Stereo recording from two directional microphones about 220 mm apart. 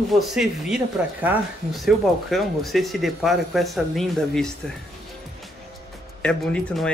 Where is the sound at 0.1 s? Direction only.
Centre (ahead or behind).